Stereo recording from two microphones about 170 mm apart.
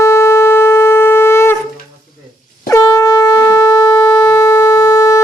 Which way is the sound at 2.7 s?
20° left (ahead or behind).